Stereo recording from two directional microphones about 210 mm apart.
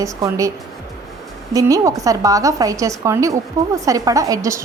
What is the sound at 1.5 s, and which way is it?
A woman's voice, 15° right (ahead or behind).